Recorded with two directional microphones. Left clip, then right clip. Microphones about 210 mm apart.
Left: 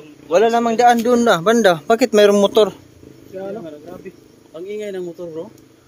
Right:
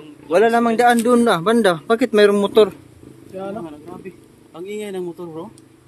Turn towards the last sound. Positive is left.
turn(degrees=-30)  # may be behind; listen again after turning